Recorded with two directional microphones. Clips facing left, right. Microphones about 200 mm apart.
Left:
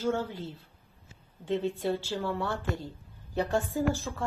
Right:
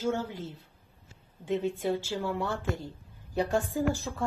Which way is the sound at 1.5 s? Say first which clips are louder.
Even; 10° right (ahead or behind).